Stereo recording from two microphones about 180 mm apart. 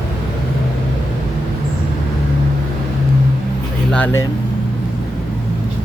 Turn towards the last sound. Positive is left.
turn(degrees=5)  # may be behind; listen again after turning